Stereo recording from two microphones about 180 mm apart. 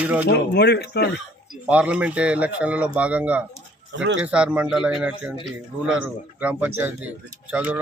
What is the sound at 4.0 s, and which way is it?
Speech, 90° right.